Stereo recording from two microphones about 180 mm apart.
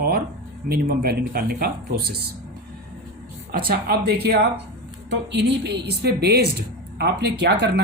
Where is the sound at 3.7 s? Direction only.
60° right (ahead or behind).